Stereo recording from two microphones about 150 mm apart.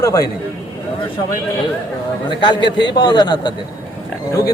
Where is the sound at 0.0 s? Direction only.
20° left (ahead or behind).